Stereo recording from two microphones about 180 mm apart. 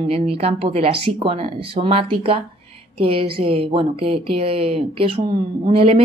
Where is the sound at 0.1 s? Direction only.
35° right (ahead or behind).